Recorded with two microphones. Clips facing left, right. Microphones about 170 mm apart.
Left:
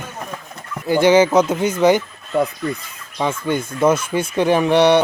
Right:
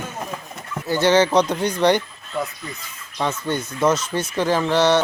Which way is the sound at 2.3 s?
55° left (ahead or behind).